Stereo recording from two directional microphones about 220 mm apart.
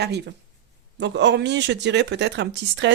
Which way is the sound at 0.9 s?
55° right (ahead or behind).